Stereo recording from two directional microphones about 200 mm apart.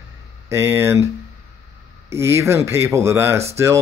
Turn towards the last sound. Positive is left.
turn(degrees=-15)  # may be behind; listen again after turning